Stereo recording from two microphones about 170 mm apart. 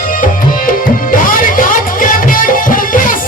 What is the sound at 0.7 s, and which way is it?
Music, 55° left (ahead or behind).